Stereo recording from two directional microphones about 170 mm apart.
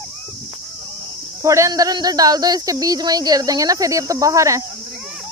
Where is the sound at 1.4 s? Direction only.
20° right (ahead or behind).